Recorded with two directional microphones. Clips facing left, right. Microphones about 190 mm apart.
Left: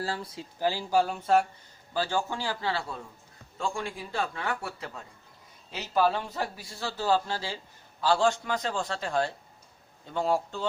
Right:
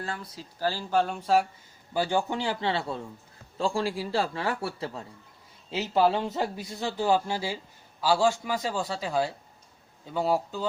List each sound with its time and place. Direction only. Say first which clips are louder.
0.0 s speech: left 3 dB; 30° left (ahead or behind)
0.6 s speech: left 1 dB; 15° left (ahead or behind)
1.9 s a man's voice: right 3 dB; 15° right (ahead or behind)